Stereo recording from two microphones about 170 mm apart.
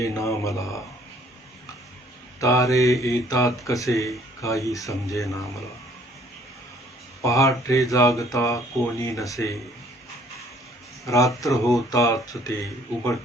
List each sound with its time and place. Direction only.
0.0 s a man's voice: 20° left (ahead or behind)
2.4 s speech: 20° left (ahead or behind)
7.2 s speech: 20° left (ahead or behind)
11.0 s speech: 20° left (ahead or behind)